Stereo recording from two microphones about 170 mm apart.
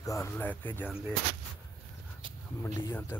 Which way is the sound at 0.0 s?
15° left (ahead or behind).